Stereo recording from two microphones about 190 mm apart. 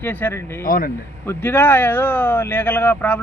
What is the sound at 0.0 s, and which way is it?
Speech, 10° left (ahead or behind).